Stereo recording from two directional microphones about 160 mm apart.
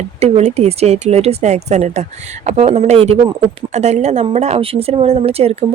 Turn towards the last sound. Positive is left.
turn(degrees=-40)  # may be behind; listen again after turning